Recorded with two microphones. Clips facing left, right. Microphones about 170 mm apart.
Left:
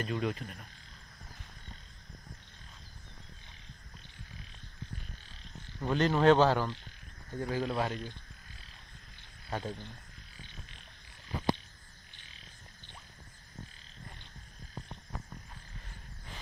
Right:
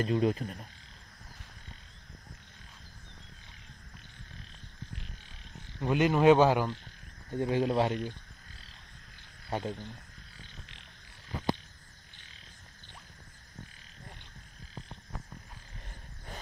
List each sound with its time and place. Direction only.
0.0 s frog: 35° right (ahead or behind)
5.8 s speech: 10° right (ahead or behind)
9.5 s speech: 15° right (ahead or behind)